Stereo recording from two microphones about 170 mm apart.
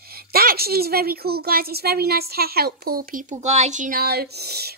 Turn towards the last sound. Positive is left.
turn(degrees=-70)  # may be behind; listen again after turning